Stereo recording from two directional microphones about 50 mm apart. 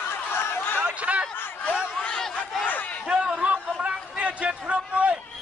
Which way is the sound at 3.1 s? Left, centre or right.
Right.